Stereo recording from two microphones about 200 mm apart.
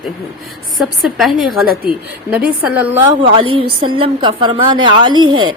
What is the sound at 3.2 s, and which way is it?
A woman's voice, 25° right (ahead or behind).